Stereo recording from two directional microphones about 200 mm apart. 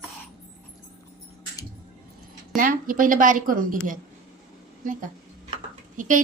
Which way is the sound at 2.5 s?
40° right (ahead or behind).